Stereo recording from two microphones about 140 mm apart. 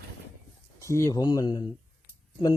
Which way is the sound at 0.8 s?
20° left (ahead or behind).